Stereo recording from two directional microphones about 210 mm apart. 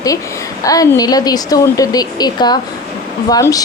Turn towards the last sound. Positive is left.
turn(degrees=15)  # may be behind; listen again after turning